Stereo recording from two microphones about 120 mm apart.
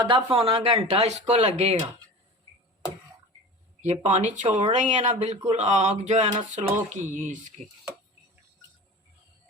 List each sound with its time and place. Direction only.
0.0 s speech: 45° right (ahead or behind); by 1.7 s 70° right (ahead or behind)
3.8 s speech: 80° right